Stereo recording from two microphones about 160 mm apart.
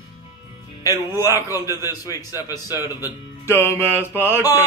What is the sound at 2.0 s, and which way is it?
A man's voice, 20° left (ahead or behind).